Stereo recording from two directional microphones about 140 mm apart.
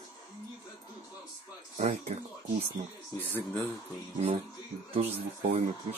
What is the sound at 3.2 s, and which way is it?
Speech, 15° left (ahead or behind).